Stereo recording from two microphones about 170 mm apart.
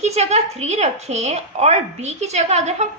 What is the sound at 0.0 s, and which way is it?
A woman's voice, 40° right (ahead or behind).